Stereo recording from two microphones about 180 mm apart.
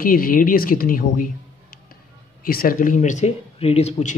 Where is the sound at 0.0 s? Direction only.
55° left (ahead or behind).